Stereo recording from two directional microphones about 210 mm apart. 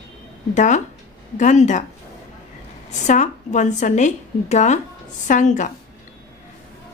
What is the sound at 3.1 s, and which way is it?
A woman's voice, 35° left (ahead or behind).